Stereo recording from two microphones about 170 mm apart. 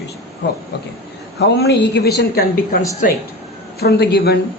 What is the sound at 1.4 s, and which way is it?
A woman's voice, 75° left (ahead or behind).